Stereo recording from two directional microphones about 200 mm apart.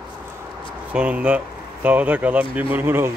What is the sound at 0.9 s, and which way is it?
Speech, 5° right (ahead or behind).